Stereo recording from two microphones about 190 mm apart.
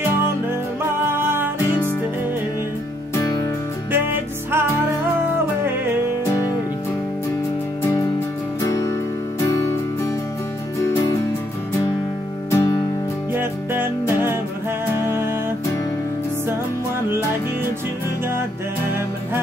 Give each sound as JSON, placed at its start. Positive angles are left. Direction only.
{"t": 1.0, "sound": "music", "side_deg": -10}
{"t": 3.9, "sound": "music", "side_deg": -10}
{"t": 8.5, "sound": "music", "side_deg": 20}
{"t": 12.4, "sound": "music", "side_deg": 15}
{"t": 13.3, "sound": "music", "side_deg": -10}